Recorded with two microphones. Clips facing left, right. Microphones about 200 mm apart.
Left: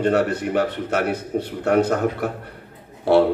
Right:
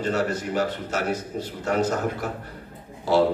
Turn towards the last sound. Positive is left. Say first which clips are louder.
# left 5 dB
turn(degrees=60)  # may be behind; listen again after turning